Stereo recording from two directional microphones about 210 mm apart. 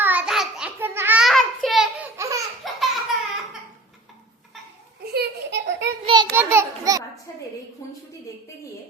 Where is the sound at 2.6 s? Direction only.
Centre (ahead or behind).